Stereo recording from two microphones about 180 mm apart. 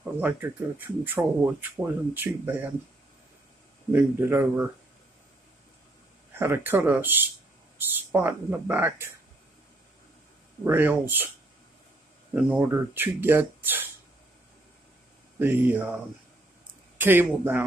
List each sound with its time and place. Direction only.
0.0 s speech: 10° right (ahead or behind)
3.9 s speech: 15° right (ahead or behind)
6.3 s speech: 10° right (ahead or behind)
10.6 s speech: 10° right (ahead or behind)
12.4 s speech: 10° right (ahead or behind)
15.3 s speech: 10° right (ahead or behind)
17.0 s speech: 10° right (ahead or behind)